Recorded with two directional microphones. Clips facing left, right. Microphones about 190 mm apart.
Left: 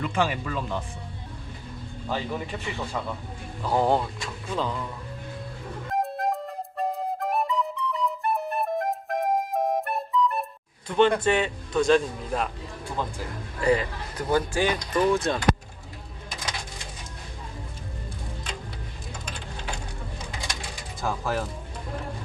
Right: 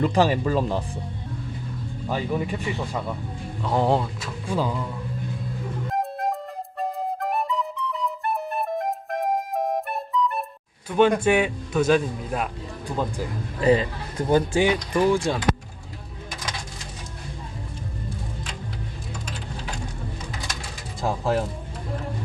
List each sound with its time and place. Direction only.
0.0 s speech: 35° right (ahead or behind)
2.0 s a man's voice: 15° right (ahead or behind)
3.6 s a man's voice: centre (ahead or behind)
5.9 s flute: centre (ahead or behind)
10.8 s a man's voice: 10° right (ahead or behind)
12.8 s a man's voice: 20° right (ahead or behind)
21.0 s a sound: 25° right (ahead or behind)